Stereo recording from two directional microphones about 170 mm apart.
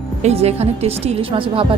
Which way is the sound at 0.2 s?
40° right (ahead or behind).